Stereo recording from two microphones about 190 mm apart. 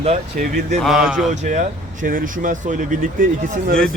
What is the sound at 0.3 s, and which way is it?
Speech, 45° right (ahead or behind).